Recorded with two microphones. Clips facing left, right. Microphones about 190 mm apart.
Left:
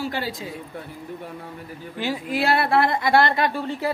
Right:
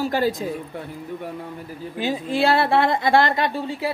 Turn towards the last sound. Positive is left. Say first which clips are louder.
# even
turn(degrees=-15)  # may be behind; listen again after turning